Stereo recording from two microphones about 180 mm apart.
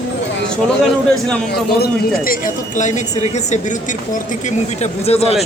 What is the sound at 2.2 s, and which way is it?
Speech, 50° left (ahead or behind).